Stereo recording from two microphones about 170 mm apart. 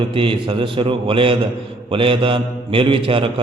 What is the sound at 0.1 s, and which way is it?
A man's voice, 30° right (ahead or behind).